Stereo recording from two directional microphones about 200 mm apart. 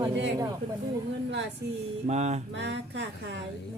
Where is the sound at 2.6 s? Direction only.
60° right (ahead or behind).